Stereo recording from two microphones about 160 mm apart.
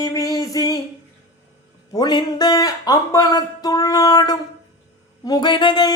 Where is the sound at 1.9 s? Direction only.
25° left (ahead or behind).